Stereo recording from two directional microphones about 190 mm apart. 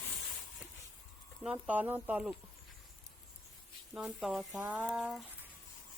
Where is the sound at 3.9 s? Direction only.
Centre (ahead or behind).